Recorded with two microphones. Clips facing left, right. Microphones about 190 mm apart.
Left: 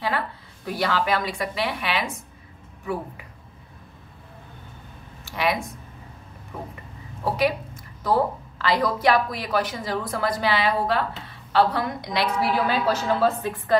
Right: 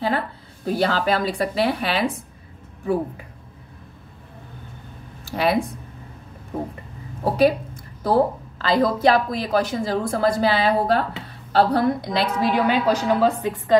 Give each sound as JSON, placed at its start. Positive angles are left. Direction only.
{"t": 0.7, "sound": "speech", "side_deg": -30}
{"t": 5.3, "sound": "speech", "side_deg": -35}
{"t": 7.2, "sound": "a woman's voice", "side_deg": -30}